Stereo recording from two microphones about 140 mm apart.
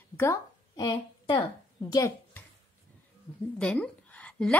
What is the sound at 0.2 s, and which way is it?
A woman's voice, 25° left (ahead or behind).